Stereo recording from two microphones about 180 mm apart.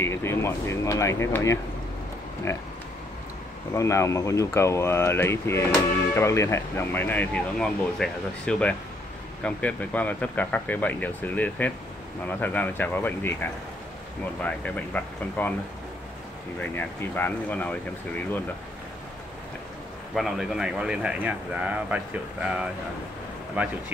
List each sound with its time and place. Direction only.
0.0 s speech: 15° left (ahead or behind)
3.7 s speech: 15° left (ahead or behind)
16.5 s speech: 10° left (ahead or behind)
20.2 s speech: centre (ahead or behind)